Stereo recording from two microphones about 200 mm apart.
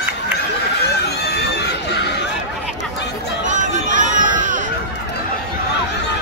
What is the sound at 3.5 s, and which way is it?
Chatter, 40° right (ahead or behind).